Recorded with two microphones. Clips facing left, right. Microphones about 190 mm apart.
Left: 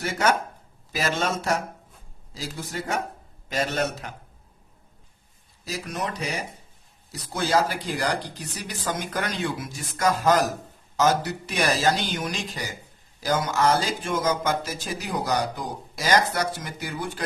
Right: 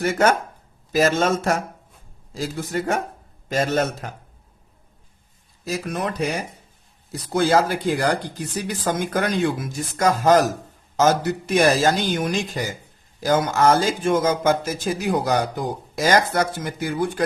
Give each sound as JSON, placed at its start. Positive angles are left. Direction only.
{"t": 0.0, "sound": "speech", "side_deg": -50}
{"t": 5.6, "sound": "speech", "side_deg": -55}